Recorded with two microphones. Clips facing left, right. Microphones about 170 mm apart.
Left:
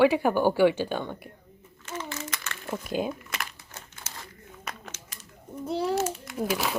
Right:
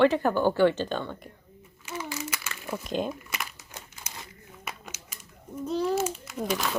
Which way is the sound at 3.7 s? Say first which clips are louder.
Even; 15° right (ahead or behind).